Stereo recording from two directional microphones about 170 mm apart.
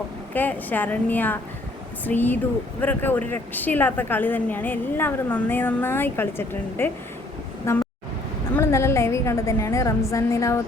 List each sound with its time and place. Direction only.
0.3 s a woman's voice: 10° left (ahead or behind)